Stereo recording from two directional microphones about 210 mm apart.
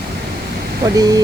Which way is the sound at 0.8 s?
15° right (ahead or behind).